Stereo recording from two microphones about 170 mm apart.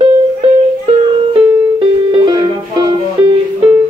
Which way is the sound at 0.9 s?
35° right (ahead or behind).